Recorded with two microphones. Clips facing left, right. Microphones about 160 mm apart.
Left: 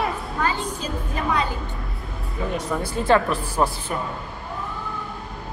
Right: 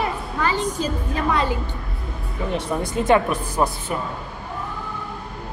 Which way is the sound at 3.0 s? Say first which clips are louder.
Right 1 dB; 15° right (ahead or behind).